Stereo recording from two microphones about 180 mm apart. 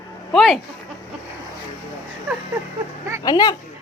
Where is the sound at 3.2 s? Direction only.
20° left (ahead or behind).